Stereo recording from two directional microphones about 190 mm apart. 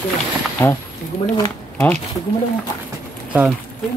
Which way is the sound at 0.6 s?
10° left (ahead or behind).